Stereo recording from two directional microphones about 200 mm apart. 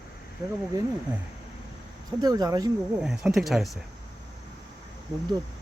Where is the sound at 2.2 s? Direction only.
20° right (ahead or behind).